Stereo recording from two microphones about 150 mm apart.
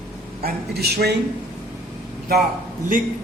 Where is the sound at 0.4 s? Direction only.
90° right.